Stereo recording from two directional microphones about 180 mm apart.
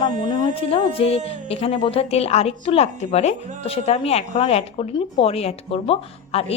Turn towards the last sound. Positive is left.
turn(degrees=35)  # may be behind; listen again after turning